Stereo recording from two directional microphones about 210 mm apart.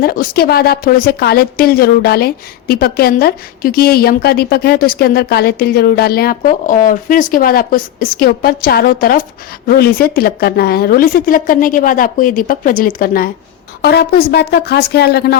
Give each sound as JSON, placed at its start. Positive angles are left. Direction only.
{"t": 0.0, "sound": "a woman's voice", "side_deg": 45}